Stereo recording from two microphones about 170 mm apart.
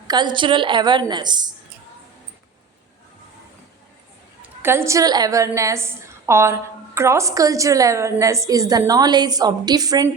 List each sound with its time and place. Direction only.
0.1 s a woman's voice: 25° right (ahead or behind)
4.4 s a woman's voice: 15° right (ahead or behind)